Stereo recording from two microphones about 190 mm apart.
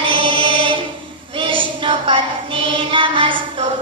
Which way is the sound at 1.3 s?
25° right (ahead or behind).